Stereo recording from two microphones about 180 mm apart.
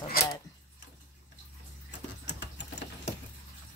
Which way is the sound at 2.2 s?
75° left (ahead or behind).